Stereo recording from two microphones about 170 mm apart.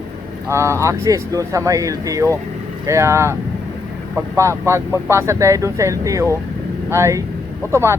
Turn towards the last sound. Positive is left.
turn(degrees=-15)  # may be behind; listen again after turning